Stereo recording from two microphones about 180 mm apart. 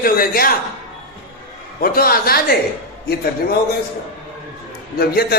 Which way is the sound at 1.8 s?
55° left (ahead or behind).